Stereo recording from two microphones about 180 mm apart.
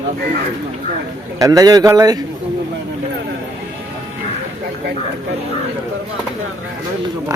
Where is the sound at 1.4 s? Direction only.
20° right (ahead or behind).